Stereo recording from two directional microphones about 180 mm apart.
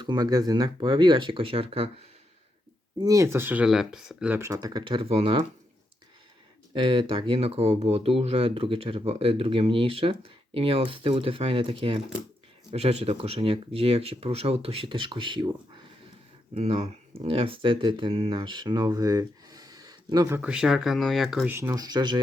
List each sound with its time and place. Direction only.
0.0 s speech: 25° right (ahead or behind)
3.0 s speech: 20° right (ahead or behind)
4.4 s speech: 20° right (ahead or behind)
6.7 s speech: 30° right (ahead or behind); by 21.5 s centre (ahead or behind)
21.5 s speech: 15° right (ahead or behind)